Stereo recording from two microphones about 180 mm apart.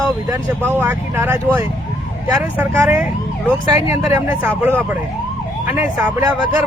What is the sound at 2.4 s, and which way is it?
Speech, 10° right (ahead or behind).